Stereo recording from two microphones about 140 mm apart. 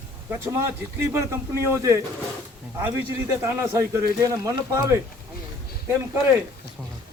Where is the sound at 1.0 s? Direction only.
20° right (ahead or behind).